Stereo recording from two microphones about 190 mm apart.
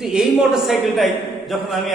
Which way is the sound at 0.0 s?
5° right (ahead or behind).